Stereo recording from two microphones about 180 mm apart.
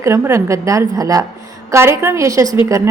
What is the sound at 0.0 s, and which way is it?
A woman's voice, 15° right (ahead or behind).